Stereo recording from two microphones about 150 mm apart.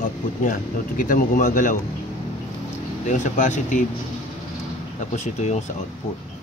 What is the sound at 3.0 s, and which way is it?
Speech, 55° left (ahead or behind).